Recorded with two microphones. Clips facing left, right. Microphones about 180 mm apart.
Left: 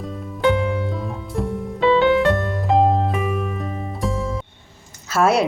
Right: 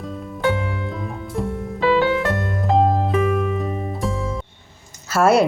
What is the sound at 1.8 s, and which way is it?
Music, 20° left (ahead or behind).